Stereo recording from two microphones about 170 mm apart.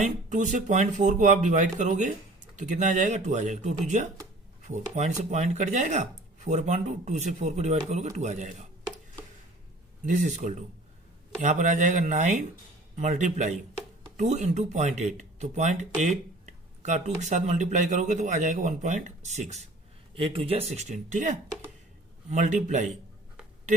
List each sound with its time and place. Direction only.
0.0 s speech: 45° right (ahead or behind)
10.1 s speech: 45° right (ahead or behind)
20.1 s speech: 30° right (ahead or behind)